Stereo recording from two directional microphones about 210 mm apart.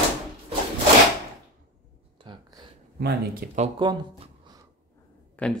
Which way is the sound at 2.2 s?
20° right (ahead or behind).